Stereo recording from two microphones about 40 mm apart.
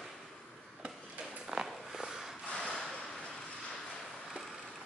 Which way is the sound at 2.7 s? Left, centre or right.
Centre.